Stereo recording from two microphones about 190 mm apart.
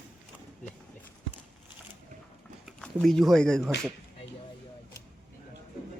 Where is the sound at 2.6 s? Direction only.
Centre (ahead or behind).